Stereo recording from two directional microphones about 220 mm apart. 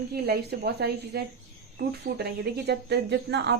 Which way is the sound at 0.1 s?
45° right (ahead or behind).